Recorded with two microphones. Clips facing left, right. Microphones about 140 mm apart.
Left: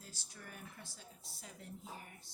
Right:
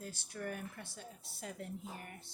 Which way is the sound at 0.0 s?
60° right (ahead or behind).